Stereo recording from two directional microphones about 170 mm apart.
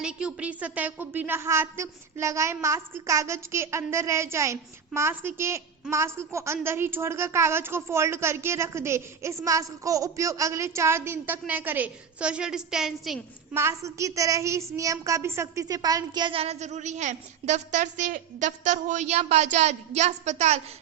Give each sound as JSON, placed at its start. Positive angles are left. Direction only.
{"t": 0.0, "sound": "a woman's voice", "side_deg": -5}
{"t": 13.5, "sound": "a woman's voice", "side_deg": -15}